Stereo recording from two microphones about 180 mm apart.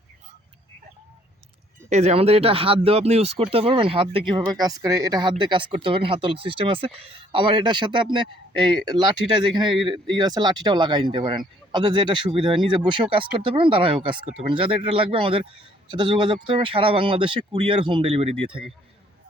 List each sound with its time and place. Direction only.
1.9 s speech: 40° right (ahead or behind)